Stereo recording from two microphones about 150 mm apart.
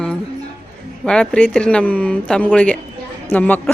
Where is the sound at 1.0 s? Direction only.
5° left (ahead or behind).